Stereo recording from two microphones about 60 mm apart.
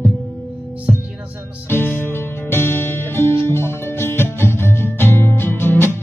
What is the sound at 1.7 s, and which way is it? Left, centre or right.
Music, left.